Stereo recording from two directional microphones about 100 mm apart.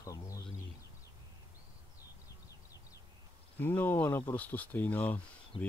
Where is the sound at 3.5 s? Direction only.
20° left (ahead or behind).